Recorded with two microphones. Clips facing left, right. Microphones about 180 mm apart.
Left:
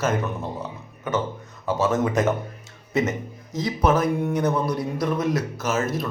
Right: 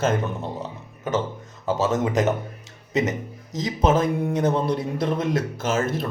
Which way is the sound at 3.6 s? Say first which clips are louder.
Even; 25° right (ahead or behind).